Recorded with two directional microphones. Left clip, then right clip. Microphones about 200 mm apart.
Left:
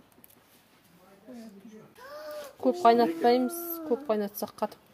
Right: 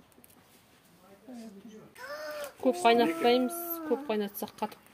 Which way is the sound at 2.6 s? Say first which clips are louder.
Left 2 dB; 15° left (ahead or behind).